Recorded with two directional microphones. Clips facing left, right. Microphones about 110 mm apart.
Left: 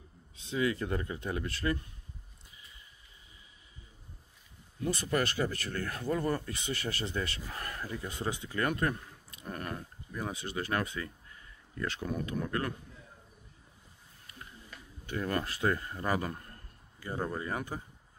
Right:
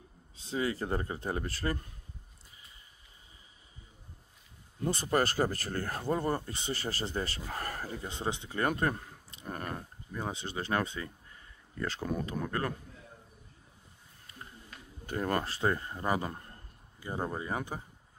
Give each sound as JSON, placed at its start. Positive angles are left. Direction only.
{"t": 0.4, "sound": "speech", "side_deg": -35}
{"t": 4.8, "sound": "speech", "side_deg": -35}
{"t": 15.0, "sound": "a man's voice", "side_deg": -40}